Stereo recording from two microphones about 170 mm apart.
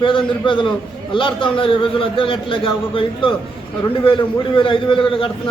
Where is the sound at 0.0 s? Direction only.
30° left (ahead or behind).